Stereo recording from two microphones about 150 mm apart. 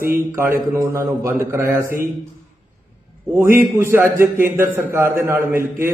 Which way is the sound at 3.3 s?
15° right (ahead or behind).